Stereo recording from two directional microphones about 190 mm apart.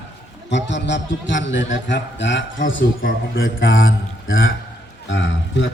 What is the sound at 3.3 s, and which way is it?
A man's voice, 90° left.